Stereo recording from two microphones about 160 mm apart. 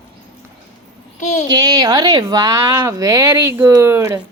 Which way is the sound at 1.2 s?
50° left (ahead or behind).